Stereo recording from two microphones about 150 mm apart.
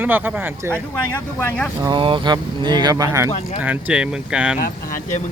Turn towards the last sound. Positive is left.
turn(degrees=-5)  # may be behind; listen again after turning